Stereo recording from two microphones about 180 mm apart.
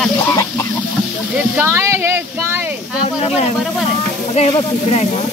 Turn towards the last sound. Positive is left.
turn(degrees=35)  # may be behind; listen again after turning